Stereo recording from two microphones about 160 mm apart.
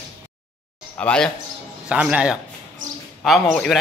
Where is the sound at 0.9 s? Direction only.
5° left (ahead or behind).